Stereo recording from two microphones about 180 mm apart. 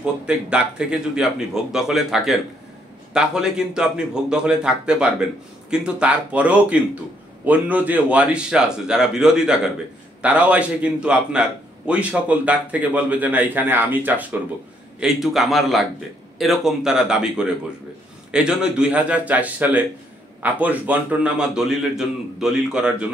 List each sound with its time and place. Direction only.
0.0 s a man's voice: 5° right (ahead or behind)